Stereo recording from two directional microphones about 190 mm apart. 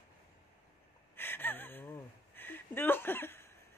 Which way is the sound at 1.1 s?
10° left (ahead or behind).